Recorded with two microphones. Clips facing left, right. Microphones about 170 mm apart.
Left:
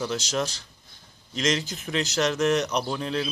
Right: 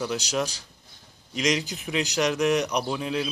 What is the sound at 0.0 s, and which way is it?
Speech, 10° right (ahead or behind).